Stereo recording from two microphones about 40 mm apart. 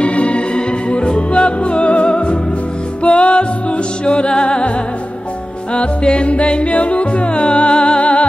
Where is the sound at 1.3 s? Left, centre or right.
Left.